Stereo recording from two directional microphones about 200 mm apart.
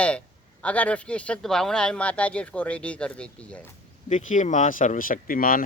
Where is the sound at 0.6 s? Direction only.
5° left (ahead or behind).